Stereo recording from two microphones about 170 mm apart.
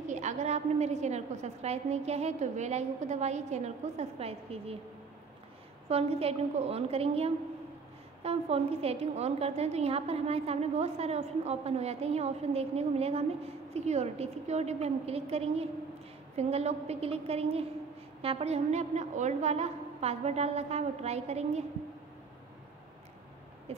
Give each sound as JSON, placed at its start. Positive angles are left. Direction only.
{"t": 0.0, "sound": "a woman's voice", "side_deg": -45}
{"t": 5.9, "sound": "a woman's voice", "side_deg": -35}